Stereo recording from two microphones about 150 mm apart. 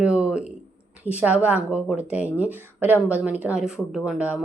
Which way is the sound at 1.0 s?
10° right (ahead or behind).